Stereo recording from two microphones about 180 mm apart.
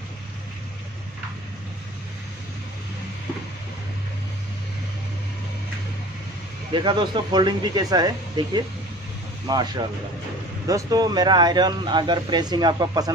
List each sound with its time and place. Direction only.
6.7 s speech: 25° right (ahead or behind)